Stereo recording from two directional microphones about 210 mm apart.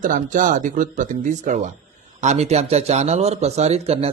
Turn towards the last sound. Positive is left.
turn(degrees=-30)  # may be behind; listen again after turning